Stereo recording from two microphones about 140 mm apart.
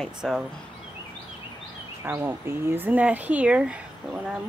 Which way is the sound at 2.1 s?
15° right (ahead or behind).